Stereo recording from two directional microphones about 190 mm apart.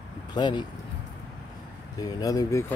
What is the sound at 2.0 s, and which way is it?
Speech, 20° left (ahead or behind).